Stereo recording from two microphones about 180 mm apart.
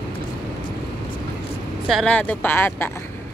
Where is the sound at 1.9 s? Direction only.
5° left (ahead or behind).